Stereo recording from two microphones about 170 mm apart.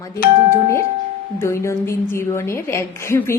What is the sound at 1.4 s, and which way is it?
A woman's voice, 15° left (ahead or behind).